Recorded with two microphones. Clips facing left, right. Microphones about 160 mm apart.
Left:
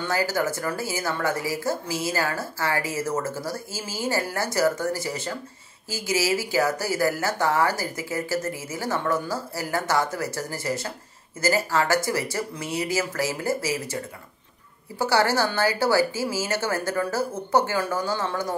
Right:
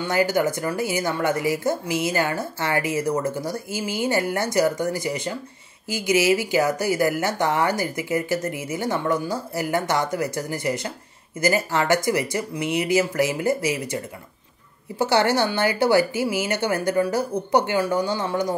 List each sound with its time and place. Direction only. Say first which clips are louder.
0.0 s speech: right 4 dB; 20° right (ahead or behind)
15.0 s speech: right 2 dB; 20° right (ahead or behind)